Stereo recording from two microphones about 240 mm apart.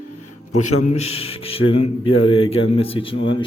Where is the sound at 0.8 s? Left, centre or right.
Left.